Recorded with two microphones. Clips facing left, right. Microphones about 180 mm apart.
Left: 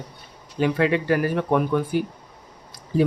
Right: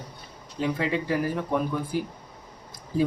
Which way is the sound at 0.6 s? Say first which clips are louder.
Left 6 dB; 75° left (ahead or behind).